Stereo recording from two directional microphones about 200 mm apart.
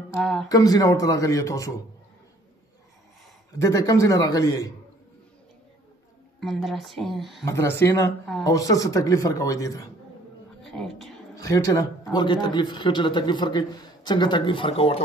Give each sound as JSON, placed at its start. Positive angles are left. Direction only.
{"t": 0.1, "sound": "speech", "side_deg": 0}
{"t": 0.5, "sound": "speech", "side_deg": 20}
{"t": 3.5, "sound": "speech", "side_deg": 15}
{"t": 6.4, "sound": "speech", "side_deg": 0}
{"t": 7.4, "sound": "speech", "side_deg": 15}
{"t": 10.6, "sound": "a woman's voice", "side_deg": 0}
{"t": 11.3, "sound": "a man's voice", "side_deg": 15}